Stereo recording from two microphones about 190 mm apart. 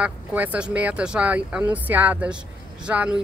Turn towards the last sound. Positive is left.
turn(degrees=-5)  # may be behind; listen again after turning